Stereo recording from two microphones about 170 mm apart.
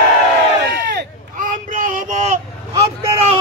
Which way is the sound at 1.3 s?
50° right (ahead or behind).